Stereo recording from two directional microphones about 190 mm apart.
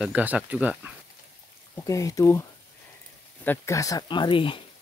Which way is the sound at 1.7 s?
15° left (ahead or behind).